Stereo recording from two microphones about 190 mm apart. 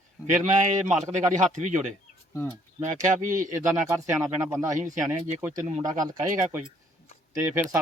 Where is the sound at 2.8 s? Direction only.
45° right (ahead or behind).